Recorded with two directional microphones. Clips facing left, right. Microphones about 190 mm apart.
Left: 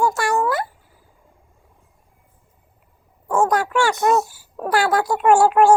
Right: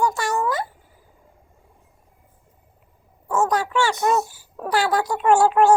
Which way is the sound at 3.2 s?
15° left (ahead or behind).